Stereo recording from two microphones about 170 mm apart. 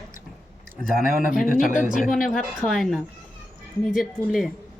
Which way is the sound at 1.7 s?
50° left (ahead or behind).